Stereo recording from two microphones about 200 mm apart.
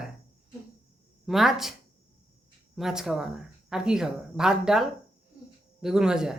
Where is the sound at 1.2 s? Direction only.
Centre (ahead or behind).